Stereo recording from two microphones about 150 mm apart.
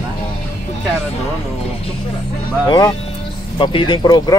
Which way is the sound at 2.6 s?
30° left (ahead or behind).